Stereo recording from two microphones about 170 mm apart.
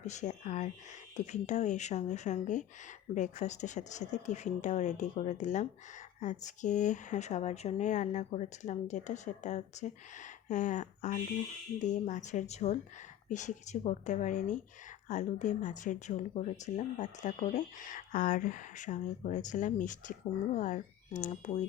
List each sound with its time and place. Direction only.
0.0 s speech: 45° left (ahead or behind)